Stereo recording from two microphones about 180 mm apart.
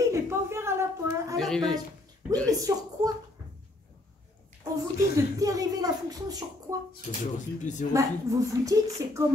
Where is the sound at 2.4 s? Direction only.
20° right (ahead or behind).